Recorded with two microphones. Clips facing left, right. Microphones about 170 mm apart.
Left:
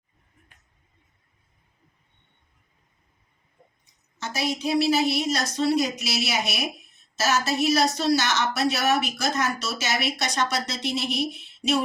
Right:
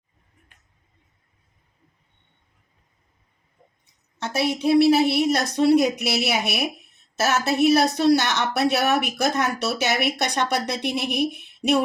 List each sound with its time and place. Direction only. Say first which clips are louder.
4.2 s a woman's voice: right 4 dB; 60° right (ahead or behind)